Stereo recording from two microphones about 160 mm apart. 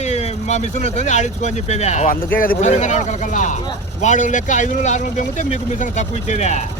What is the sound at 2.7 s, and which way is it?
Speech, 50° left (ahead or behind).